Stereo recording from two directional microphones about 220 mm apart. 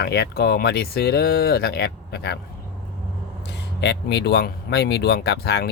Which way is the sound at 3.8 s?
50° left (ahead or behind).